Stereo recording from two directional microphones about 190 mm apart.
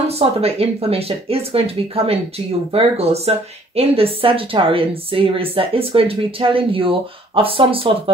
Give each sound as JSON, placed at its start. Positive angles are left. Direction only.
{"t": 0.2, "sound": "a woman's voice", "side_deg": -30}